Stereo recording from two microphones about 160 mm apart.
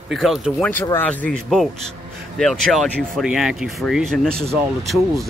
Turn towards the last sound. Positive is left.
turn(degrees=0)  # may be behind; listen again after turning